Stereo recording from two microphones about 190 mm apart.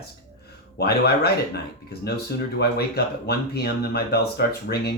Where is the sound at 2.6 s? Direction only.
55° left (ahead or behind).